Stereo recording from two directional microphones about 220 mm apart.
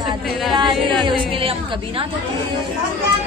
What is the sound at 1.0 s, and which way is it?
A woman's voice, 25° right (ahead or behind).